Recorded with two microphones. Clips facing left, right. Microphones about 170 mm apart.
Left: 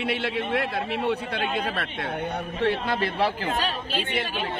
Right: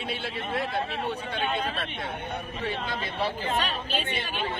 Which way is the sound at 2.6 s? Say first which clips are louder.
Left 9 dB; 70° left (ahead or behind).